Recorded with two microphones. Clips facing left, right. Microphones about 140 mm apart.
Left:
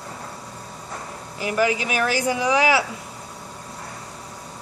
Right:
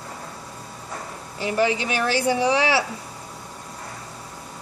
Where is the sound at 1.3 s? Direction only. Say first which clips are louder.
Even; 30° right (ahead or behind).